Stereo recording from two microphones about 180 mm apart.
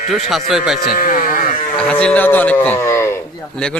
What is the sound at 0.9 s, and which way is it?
Speech, 50° left (ahead or behind).